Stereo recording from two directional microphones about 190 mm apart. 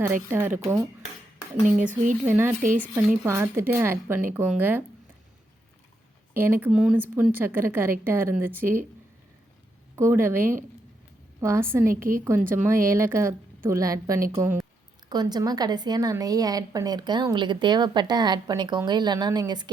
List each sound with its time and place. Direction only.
0.3 s a woman's voice: 10° right (ahead or behind)
1.6 s speech: 40° right (ahead or behind)
2.2 s a woman's voice: 10° right (ahead or behind)
2.6 s speech: 45° right (ahead or behind)
3.2 s a woman's voice: 15° right (ahead or behind)
6.3 s a woman's voice: 10° right (ahead or behind)
9.9 s a woman's voice: 10° right (ahead or behind)